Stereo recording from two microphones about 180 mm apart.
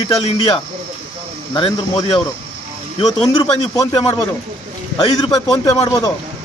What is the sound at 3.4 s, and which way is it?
Speech, 25° left (ahead or behind).